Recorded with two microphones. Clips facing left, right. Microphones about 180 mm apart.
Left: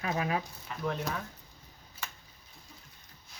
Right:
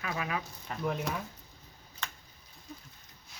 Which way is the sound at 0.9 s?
10° right (ahead or behind).